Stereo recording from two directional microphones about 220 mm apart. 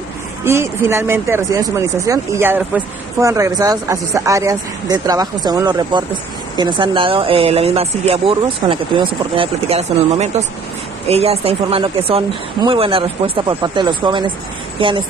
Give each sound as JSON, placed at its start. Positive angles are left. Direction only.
{"t": 0.4, "sound": "speech", "side_deg": -10}